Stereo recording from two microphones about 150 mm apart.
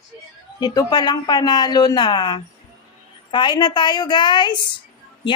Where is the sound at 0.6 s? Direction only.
25° left (ahead or behind).